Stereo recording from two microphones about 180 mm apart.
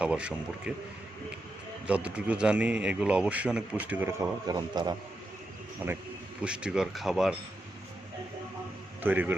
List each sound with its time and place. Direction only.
0.0 s speech: 5° right (ahead or behind)
1.9 s a man's voice: 5° right (ahead or behind)
4.4 s a man's voice: 25° right (ahead or behind)
5.8 s a man's voice: 10° right (ahead or behind)
9.0 s a man's voice: 10° right (ahead or behind)